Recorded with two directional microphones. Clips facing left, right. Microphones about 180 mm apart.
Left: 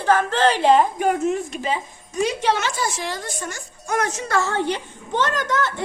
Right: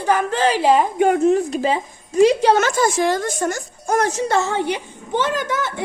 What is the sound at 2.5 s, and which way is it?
A woman's voice, 50° right (ahead or behind).